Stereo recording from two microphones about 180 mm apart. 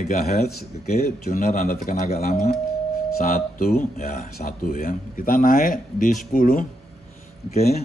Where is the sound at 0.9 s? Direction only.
50° left (ahead or behind).